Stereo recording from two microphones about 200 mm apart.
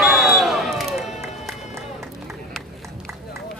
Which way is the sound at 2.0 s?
Centre (ahead or behind).